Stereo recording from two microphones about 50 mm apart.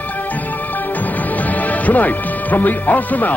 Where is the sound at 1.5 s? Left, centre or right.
Left.